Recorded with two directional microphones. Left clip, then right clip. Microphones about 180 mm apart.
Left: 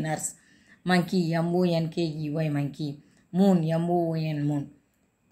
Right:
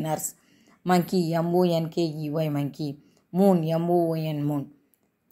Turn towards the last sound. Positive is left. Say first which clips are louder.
# right 2 dB
turn(degrees=-30)  # may be behind; listen again after turning